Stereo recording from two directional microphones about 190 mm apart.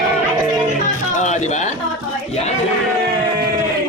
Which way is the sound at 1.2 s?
40° left (ahead or behind).